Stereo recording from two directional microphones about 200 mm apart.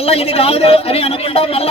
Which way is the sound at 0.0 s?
30° left (ahead or behind).